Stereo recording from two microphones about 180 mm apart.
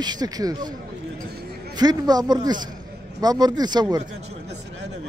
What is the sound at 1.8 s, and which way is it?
A man's voice, 20° right (ahead or behind).